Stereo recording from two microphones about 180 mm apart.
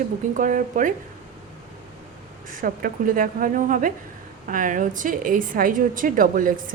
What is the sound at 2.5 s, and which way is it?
Speech, 50° right (ahead or behind).